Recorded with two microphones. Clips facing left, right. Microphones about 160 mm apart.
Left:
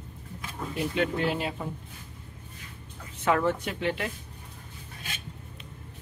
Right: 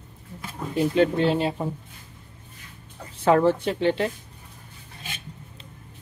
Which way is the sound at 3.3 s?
30° right (ahead or behind).